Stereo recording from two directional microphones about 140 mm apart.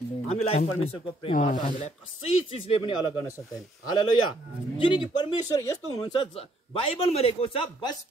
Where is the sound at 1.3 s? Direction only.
70° left (ahead or behind).